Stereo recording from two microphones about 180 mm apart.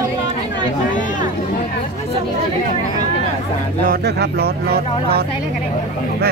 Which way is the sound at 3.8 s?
60° right (ahead or behind).